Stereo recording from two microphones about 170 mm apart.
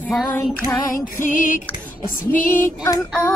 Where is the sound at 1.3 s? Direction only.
50° left (ahead or behind).